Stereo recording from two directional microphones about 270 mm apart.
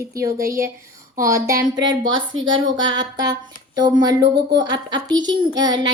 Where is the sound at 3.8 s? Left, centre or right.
Centre.